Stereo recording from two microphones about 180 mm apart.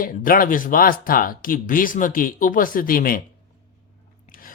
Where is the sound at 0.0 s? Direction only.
50° left (ahead or behind).